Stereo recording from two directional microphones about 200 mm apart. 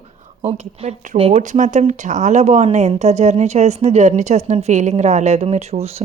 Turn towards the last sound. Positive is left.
turn(degrees=-30)  # may be behind; listen again after turning